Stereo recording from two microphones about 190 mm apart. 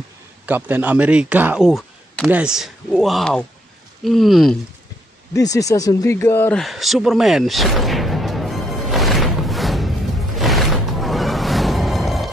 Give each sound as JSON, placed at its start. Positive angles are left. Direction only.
{"t": 0.5, "sound": "speech", "side_deg": -10}
{"t": 5.3, "sound": "speech", "side_deg": 20}
{"t": 6.6, "sound": "artillery fire", "side_deg": 0}